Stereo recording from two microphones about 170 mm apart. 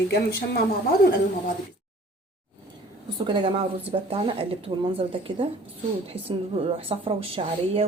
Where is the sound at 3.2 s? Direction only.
25° right (ahead or behind).